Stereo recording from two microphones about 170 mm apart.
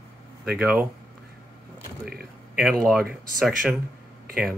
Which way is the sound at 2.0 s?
65° right (ahead or behind).